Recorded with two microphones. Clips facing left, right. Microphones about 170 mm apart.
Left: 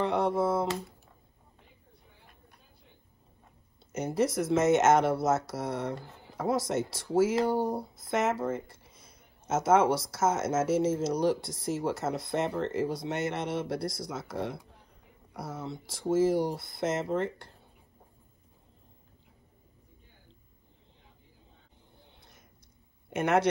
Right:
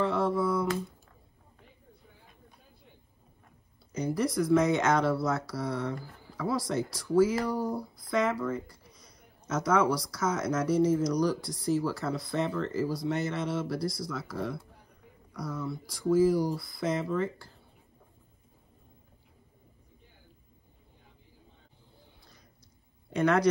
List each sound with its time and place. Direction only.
0.0 s a sound: 20° left (ahead or behind)
3.9 s speech: 25° left (ahead or behind)
23.2 s speech: 25° left (ahead or behind)